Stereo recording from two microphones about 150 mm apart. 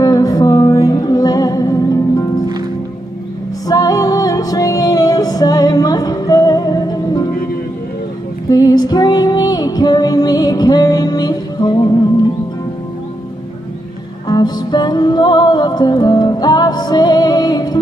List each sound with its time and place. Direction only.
0.0 s music: 25° left (ahead or behind)
3.6 s music: 25° left (ahead or behind)
8.5 s female singing: 25° left (ahead or behind)
14.2 s music: 30° left (ahead or behind)